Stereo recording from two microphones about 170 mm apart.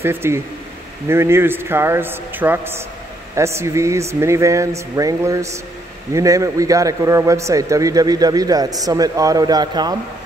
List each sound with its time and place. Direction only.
0.0 s a man's voice: 15° right (ahead or behind)